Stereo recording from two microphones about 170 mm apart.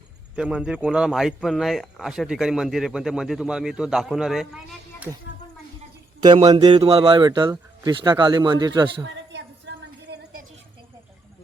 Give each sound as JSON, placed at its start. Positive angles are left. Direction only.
{"t": 0.3, "sound": "a man's voice", "side_deg": -5}
{"t": 6.2, "sound": "speech", "side_deg": -25}
{"t": 9.0, "sound": "a sound", "side_deg": -90}